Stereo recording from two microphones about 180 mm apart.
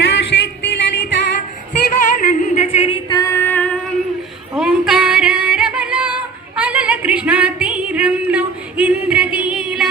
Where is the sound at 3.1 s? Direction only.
20° left (ahead or behind).